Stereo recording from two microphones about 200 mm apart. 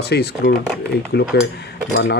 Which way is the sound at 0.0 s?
55° left (ahead or behind).